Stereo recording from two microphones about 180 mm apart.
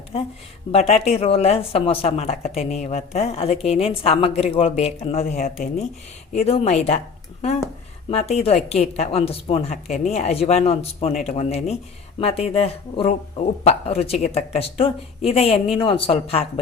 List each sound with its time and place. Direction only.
0.7 s speech: 35° left (ahead or behind)
8.1 s speech: 35° left (ahead or behind)